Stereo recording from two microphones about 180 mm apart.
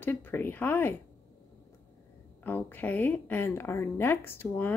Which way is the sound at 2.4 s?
10° left (ahead or behind).